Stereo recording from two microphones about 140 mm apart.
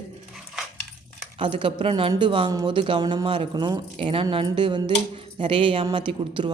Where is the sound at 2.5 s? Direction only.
25° right (ahead or behind).